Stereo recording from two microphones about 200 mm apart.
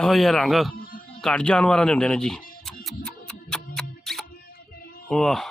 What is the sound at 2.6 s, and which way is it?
Music, centre (ahead or behind).